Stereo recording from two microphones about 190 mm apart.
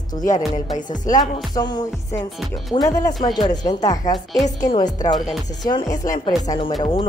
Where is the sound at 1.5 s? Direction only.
20° left (ahead or behind).